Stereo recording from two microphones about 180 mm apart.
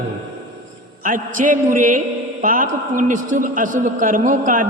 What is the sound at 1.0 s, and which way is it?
A man's voice, 45° right (ahead or behind).